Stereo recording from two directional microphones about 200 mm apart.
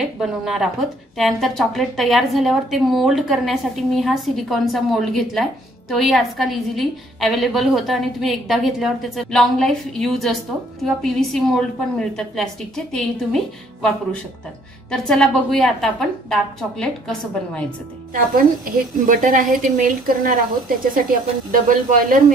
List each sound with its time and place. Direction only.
0.2 s a woman's voice: centre (ahead or behind)
14.9 s a woman's voice: 5° left (ahead or behind)
19.0 s speech: 40° right (ahead or behind)